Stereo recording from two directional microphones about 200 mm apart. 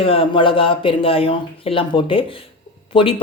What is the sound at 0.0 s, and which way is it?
Speech, 25° left (ahead or behind).